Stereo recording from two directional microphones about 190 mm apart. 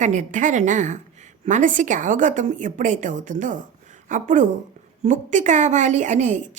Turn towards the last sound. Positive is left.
turn(degrees=-40)  # may be behind; listen again after turning